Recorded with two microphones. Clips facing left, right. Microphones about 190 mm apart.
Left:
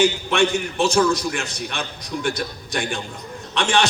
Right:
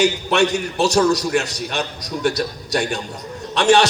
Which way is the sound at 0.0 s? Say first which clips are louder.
Right 1 dB; 40° right (ahead or behind).